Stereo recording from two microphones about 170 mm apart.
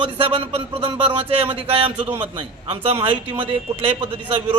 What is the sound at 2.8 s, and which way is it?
Speech, 35° right (ahead or behind).